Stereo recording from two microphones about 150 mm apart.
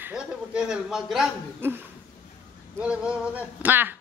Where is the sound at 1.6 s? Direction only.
15° right (ahead or behind).